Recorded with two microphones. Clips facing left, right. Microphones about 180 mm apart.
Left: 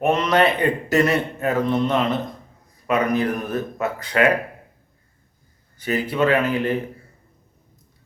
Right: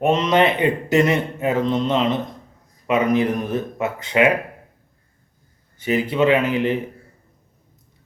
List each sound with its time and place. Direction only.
0.0 s speech: 20° right (ahead or behind)
5.8 s speech: 20° right (ahead or behind)